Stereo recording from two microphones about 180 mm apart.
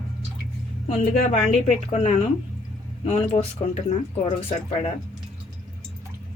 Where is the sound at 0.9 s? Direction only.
40° left (ahead or behind).